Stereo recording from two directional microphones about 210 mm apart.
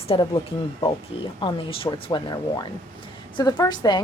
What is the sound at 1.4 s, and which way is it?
A woman's voice, 25° left (ahead or behind).